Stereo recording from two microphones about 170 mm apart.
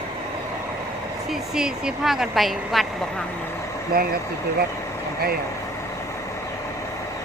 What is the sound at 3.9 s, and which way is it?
Speech, 65° right (ahead or behind).